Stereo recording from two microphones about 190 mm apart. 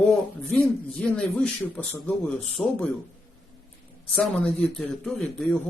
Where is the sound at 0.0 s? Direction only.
5° left (ahead or behind).